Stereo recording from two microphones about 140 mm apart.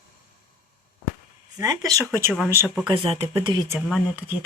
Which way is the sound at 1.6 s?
25° right (ahead or behind).